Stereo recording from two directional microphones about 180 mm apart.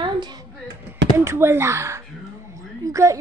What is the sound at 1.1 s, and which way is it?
A child's voice, 15° right (ahead or behind).